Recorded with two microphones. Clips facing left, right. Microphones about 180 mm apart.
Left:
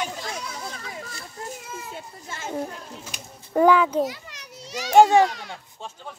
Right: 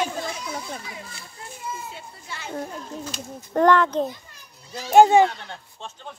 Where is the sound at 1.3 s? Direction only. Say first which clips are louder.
Right 1 dB; 45° left (ahead or behind).